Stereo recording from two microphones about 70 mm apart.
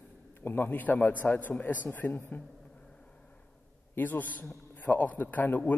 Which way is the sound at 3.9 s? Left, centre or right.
Left.